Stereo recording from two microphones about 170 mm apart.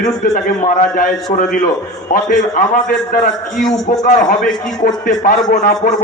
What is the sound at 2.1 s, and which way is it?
A man's voice, 55° left (ahead or behind).